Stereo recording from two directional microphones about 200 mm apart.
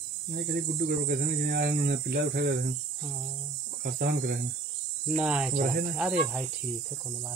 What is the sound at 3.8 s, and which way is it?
Speech, 50° right (ahead or behind).